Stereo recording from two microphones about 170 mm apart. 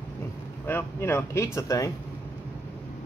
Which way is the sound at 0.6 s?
15° left (ahead or behind).